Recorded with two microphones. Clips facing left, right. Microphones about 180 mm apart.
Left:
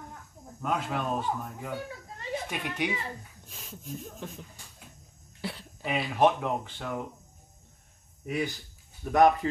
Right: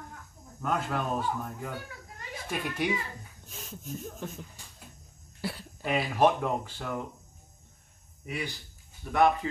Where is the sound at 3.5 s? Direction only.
Centre (ahead or behind).